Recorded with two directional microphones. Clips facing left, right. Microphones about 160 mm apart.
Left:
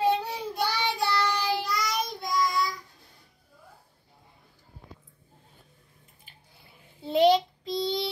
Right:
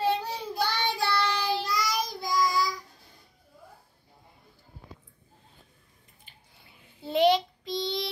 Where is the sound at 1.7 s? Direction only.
Centre (ahead or behind).